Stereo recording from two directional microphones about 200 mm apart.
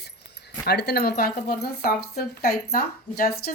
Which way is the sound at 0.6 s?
55° left (ahead or behind).